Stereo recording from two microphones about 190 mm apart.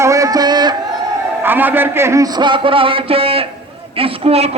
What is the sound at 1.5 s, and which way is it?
A man's voice, 10° right (ahead or behind).